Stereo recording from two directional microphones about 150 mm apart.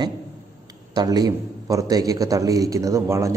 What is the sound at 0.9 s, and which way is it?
A man's voice, 25° right (ahead or behind).